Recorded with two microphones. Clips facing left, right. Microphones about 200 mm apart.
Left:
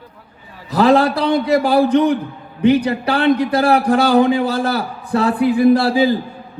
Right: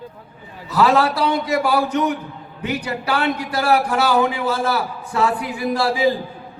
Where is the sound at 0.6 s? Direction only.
35° left (ahead or behind).